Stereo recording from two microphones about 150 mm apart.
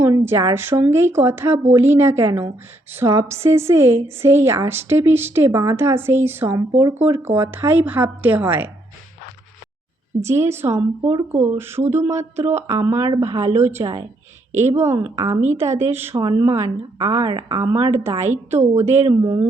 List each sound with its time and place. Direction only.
0.0 s a woman's voice: 15° right (ahead or behind)
10.2 s a woman's voice: 20° right (ahead or behind)
14.5 s speech: 50° right (ahead or behind)
14.8 s a woman's voice: 20° right (ahead or behind)